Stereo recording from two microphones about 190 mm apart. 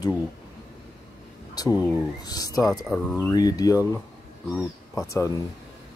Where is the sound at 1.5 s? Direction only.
20° left (ahead or behind).